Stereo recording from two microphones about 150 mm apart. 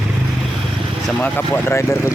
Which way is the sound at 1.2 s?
15° left (ahead or behind).